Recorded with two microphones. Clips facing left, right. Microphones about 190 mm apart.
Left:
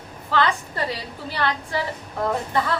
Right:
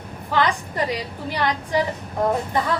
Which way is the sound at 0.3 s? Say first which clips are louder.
Right 1 dB; 15° right (ahead or behind).